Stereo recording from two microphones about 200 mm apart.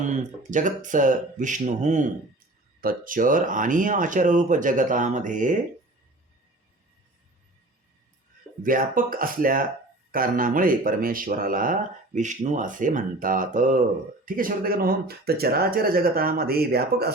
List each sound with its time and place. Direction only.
0.2 s speech: 40° right (ahead or behind)
8.6 s speech: 45° right (ahead or behind)